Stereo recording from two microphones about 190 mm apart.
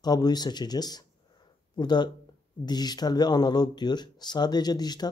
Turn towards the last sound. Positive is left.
turn(degrees=20)  # may be behind; listen again after turning